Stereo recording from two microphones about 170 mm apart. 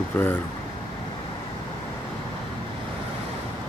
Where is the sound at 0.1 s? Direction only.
15° left (ahead or behind).